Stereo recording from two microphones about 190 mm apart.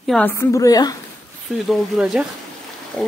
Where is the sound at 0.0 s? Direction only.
Centre (ahead or behind).